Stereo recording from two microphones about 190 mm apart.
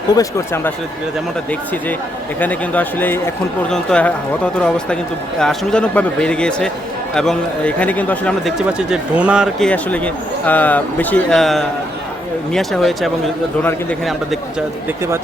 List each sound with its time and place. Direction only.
0.1 s speech: 15° left (ahead or behind)
5.4 s speech: 5° left (ahead or behind)